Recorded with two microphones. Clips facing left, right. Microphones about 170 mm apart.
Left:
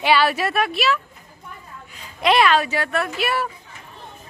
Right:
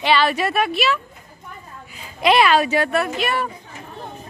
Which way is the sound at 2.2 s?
5° right (ahead or behind).